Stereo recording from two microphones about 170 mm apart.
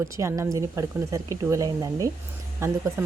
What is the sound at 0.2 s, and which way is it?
Speech, 20° right (ahead or behind).